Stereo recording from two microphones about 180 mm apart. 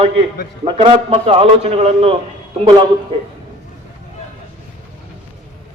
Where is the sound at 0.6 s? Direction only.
35° right (ahead or behind).